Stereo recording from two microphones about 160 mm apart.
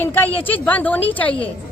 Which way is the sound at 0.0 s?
15° left (ahead or behind).